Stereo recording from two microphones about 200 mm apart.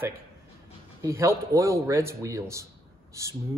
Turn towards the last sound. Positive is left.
turn(degrees=-15)  # may be behind; listen again after turning